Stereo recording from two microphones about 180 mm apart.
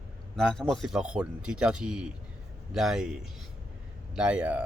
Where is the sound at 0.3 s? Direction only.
Centre (ahead or behind).